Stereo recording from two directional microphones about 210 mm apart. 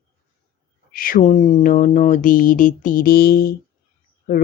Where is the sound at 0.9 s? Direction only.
40° left (ahead or behind).